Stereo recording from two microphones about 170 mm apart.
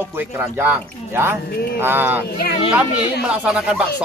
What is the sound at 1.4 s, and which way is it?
Speech, 65° left (ahead or behind).